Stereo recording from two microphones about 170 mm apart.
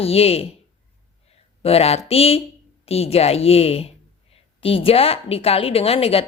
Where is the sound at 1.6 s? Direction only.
35° left (ahead or behind).